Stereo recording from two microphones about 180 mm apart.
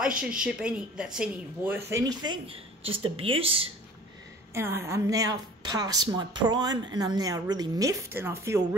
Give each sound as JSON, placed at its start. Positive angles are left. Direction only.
{"t": 0.4, "sound": "speech", "side_deg": -5}
{"t": 4.6, "sound": "a woman's voice", "side_deg": -15}